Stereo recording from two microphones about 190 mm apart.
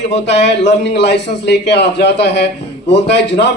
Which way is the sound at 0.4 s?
65° left (ahead or behind).